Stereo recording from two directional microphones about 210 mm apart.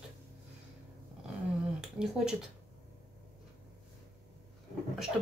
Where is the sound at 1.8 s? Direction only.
Centre (ahead or behind).